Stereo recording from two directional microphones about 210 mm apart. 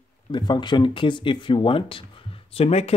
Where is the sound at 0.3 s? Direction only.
20° left (ahead or behind).